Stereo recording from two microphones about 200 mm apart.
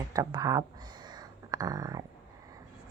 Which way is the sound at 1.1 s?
20° right (ahead or behind).